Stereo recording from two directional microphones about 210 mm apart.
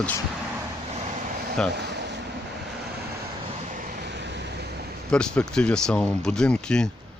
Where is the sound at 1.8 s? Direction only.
55° right (ahead or behind).